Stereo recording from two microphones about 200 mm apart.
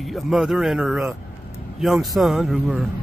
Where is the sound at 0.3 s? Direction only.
5° right (ahead or behind).